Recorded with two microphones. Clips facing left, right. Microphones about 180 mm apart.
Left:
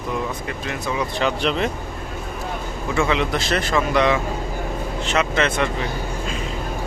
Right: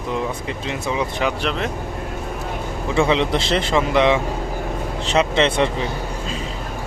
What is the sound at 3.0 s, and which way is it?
A man's voice, 25° right (ahead or behind).